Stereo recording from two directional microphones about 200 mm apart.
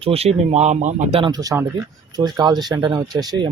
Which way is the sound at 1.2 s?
20° right (ahead or behind).